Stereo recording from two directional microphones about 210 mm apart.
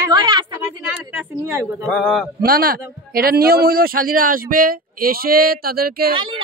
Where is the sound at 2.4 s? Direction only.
45° right (ahead or behind).